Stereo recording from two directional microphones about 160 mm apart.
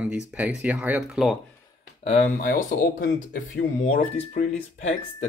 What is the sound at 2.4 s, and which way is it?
Speech, 65° left (ahead or behind).